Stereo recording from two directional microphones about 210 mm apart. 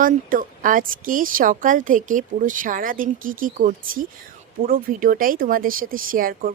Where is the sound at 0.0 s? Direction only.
40° right (ahead or behind).